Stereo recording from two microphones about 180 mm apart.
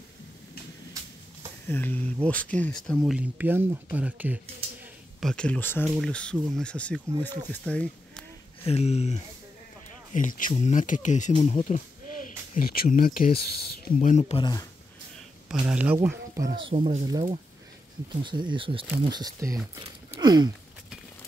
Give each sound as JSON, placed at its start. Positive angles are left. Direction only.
{"t": 1.7, "sound": "speech", "side_deg": 10}
{"t": 5.2, "sound": "speech", "side_deg": 5}
{"t": 8.6, "sound": "speech", "side_deg": 35}
{"t": 12.5, "sound": "speech", "side_deg": 55}
{"t": 14.3, "sound": "speech", "side_deg": 20}
{"t": 15.4, "sound": "speech", "side_deg": -5}
{"t": 18.2, "sound": "speech", "side_deg": -25}
{"t": 20.2, "sound": "a sound", "side_deg": -25}